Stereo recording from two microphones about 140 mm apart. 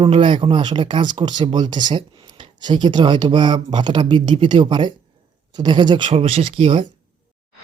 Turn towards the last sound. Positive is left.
turn(degrees=-40)  # may be behind; listen again after turning